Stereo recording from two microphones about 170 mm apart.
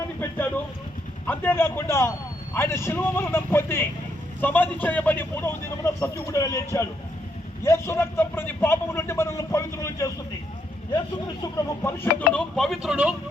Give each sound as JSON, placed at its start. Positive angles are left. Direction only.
{"t": 0.2, "sound": "a sound", "side_deg": 10}
{"t": 1.3, "sound": "a man's voice", "side_deg": 10}
{"t": 11.5, "sound": "a man's voice", "side_deg": 15}
{"t": 12.5, "sound": "speech", "side_deg": 0}